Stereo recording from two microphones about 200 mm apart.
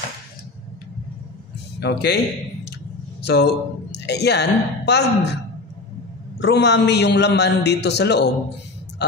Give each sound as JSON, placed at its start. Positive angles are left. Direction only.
{"t": 1.8, "sound": "speech", "side_deg": 55}
{"t": 3.3, "sound": "speech", "side_deg": 55}
{"t": 6.4, "sound": "speech", "side_deg": 60}